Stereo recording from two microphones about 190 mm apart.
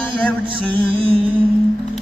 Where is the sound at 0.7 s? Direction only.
30° right (ahead or behind).